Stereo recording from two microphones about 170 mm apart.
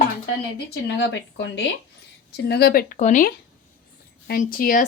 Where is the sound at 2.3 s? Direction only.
70° left (ahead or behind).